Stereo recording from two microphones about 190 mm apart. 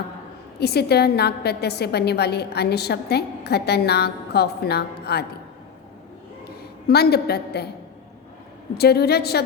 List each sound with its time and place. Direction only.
0.6 s a woman's voice: 60° left (ahead or behind)
6.8 s a woman's voice: 55° left (ahead or behind)
8.8 s a woman's voice: 55° left (ahead or behind)